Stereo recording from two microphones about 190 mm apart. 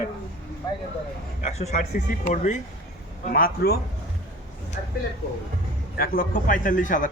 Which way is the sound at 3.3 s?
50° left (ahead or behind).